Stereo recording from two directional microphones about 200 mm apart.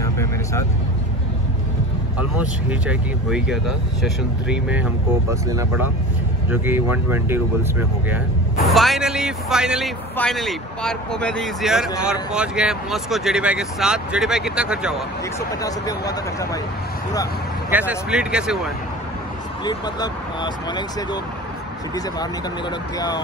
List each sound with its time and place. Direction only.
0.0 s vehicle: 15° left (ahead or behind)
2.1 s speech: 5° right (ahead or behind)
8.6 s speech: centre (ahead or behind)
15.6 s speech: 20° left (ahead or behind)
17.6 s speech: 10° right (ahead or behind)
19.6 s speech: 20° left (ahead or behind)